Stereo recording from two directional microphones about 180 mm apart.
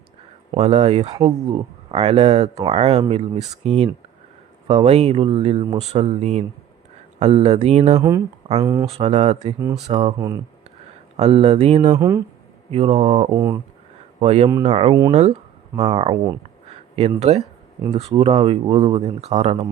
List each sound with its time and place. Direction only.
0.5 s speech: 35° right (ahead or behind)
1.1 s speech: 20° right (ahead or behind)
1.9 s speech: 35° right (ahead or behind)
7.9 s speech: 20° right (ahead or behind)
8.9 s speech: 35° right (ahead or behind)
10.2 s speech: 20° right (ahead or behind)
11.2 s speech: 35° right (ahead or behind)
11.9 s speech: 15° right (ahead or behind)
12.7 s speech: 35° right (ahead or behind)
13.3 s speech: 15° right (ahead or behind)
14.2 s speech: 35° right (ahead or behind)
16.6 s a sound: 35° right (ahead or behind)
17.9 s speech: 35° right (ahead or behind)